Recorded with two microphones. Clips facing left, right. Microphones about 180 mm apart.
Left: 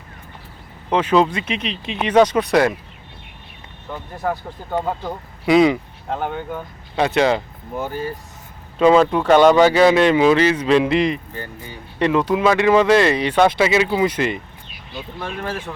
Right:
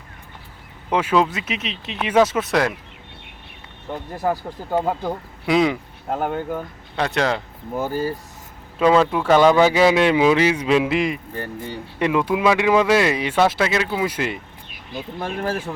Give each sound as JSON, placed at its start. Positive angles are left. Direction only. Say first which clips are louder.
{"t": 0.9, "sound": "speech", "louder": "left 2 dB", "side_deg": -10}
{"t": 4.2, "sound": "speech", "louder": "right 1 dB", "side_deg": -10}
{"t": 5.5, "sound": "speech", "louder": "left 4 dB", "side_deg": 0}
{"t": 8.8, "sound": "speech", "louder": "left 3 dB", "side_deg": 0}
{"t": 14.7, "sound": "a sound", "louder": "right 2 dB", "side_deg": -50}
{"t": 15.4, "sound": "speech", "louder": "right 3 dB", "side_deg": -35}